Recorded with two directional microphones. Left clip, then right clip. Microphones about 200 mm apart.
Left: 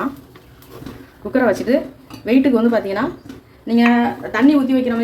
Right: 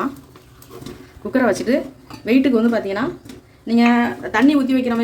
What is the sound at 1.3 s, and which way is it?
A woman's voice, 20° right (ahead or behind).